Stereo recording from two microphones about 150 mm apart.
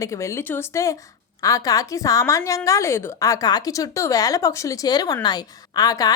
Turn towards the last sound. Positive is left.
turn(degrees=25)  # may be behind; listen again after turning